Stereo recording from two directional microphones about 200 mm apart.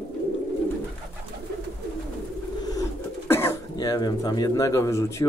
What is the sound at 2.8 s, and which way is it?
Speech, 15° left (ahead or behind).